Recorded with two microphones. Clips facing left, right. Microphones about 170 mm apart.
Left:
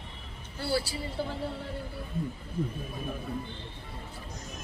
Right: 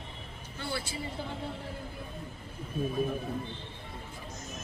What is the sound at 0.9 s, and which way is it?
Speech, 35° left (ahead or behind).